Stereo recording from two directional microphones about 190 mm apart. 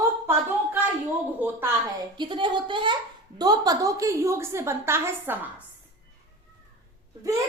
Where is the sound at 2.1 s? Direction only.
25° right (ahead or behind).